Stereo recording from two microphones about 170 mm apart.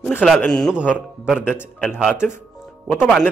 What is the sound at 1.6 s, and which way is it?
Speech, 5° left (ahead or behind).